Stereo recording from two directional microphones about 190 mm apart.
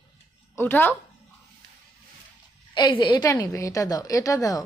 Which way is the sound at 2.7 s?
25° left (ahead or behind).